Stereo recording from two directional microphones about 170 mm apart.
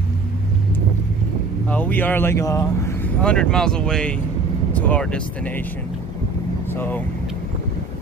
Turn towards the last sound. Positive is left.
turn(degrees=10)  # may be behind; listen again after turning